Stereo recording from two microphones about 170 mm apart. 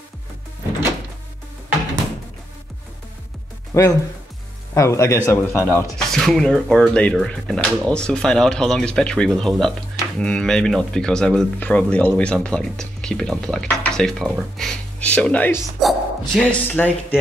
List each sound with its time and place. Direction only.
3.7 s speech: 20° left (ahead or behind)
5.9 s speech: centre (ahead or behind)
15.8 s a sound: centre (ahead or behind)
16.6 s speech: 10° left (ahead or behind)